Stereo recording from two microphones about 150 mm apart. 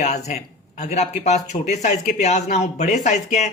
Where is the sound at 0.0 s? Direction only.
50° left (ahead or behind).